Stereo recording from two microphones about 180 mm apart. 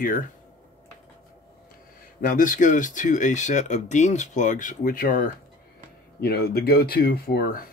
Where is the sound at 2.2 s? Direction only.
45° left (ahead or behind).